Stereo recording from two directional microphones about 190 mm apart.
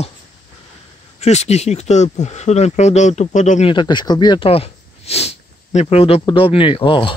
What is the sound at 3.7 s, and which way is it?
Speech, 25° left (ahead or behind).